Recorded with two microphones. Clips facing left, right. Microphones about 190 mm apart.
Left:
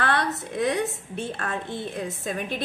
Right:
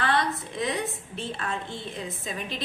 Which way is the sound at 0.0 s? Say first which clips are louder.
Left 1 dB; 65° left (ahead or behind).